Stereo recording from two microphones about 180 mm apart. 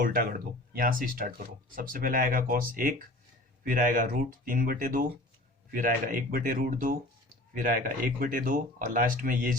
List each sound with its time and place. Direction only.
0.0 s speech: 50° right (ahead or behind)